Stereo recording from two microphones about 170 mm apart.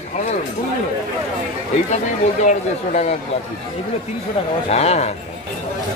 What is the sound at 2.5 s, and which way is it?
Speech, 45° left (ahead or behind).